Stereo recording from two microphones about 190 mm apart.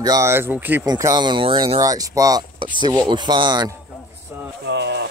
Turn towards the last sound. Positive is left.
turn(degrees=-65)  # may be behind; listen again after turning